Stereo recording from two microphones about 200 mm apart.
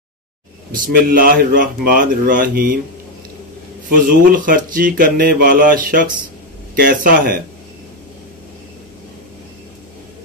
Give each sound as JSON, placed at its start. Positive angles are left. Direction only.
{"t": 0.7, "sound": "speech", "side_deg": -45}
{"t": 3.9, "sound": "speech", "side_deg": -45}